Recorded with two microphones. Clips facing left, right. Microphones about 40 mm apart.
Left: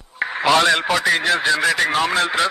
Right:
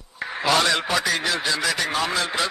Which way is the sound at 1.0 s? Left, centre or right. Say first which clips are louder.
Left 5 dB; left.